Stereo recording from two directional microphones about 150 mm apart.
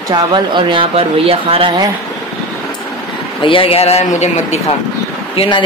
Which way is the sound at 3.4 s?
35° left (ahead or behind).